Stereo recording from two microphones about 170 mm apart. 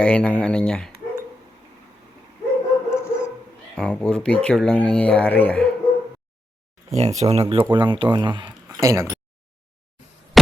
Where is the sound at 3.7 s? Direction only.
5° left (ahead or behind).